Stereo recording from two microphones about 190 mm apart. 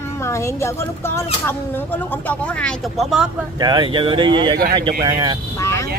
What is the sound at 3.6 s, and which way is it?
Speech, 25° right (ahead or behind).